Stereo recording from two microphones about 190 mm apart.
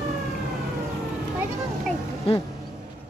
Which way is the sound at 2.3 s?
30° left (ahead or behind).